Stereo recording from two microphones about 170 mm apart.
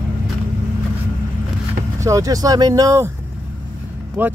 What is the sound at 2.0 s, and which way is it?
Speech, 20° right (ahead or behind).